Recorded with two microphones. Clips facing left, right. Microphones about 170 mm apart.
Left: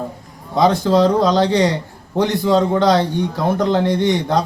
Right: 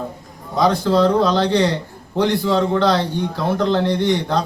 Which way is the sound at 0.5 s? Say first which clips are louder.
Left 2 dB; 20° left (ahead or behind).